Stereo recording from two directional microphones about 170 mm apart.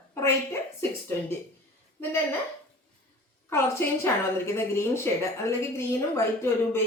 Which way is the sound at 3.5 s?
15° left (ahead or behind).